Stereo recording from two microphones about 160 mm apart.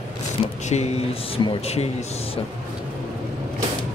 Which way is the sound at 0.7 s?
40° left (ahead or behind).